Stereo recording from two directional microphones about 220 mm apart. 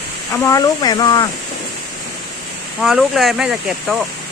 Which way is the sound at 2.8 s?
Centre (ahead or behind).